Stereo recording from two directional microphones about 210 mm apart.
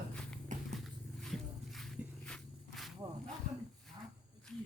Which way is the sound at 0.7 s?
Centre (ahead or behind).